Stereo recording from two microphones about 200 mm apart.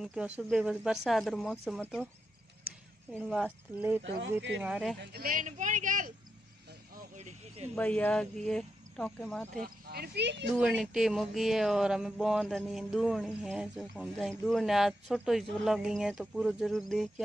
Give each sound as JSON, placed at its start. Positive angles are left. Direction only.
{"t": 0.0, "sound": "speech", "side_deg": 0}
{"t": 3.2, "sound": "speech", "side_deg": 0}
{"t": 4.0, "sound": "speech", "side_deg": -65}
{"t": 4.6, "sound": "speech", "side_deg": -5}
{"t": 5.0, "sound": "speech", "side_deg": -50}
{"t": 7.2, "sound": "a sound", "side_deg": -35}
{"t": 7.7, "sound": "speech", "side_deg": 10}
{"t": 9.8, "sound": "speech", "side_deg": -50}
{"t": 10.5, "sound": "speech", "side_deg": -5}